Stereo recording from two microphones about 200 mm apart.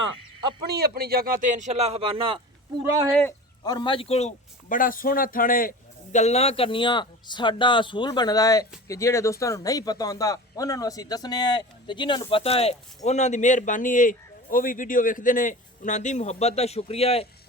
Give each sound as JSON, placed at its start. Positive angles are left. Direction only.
{"t": 0.7, "sound": "speech", "side_deg": -50}
{"t": 3.2, "sound": "speech", "side_deg": 15}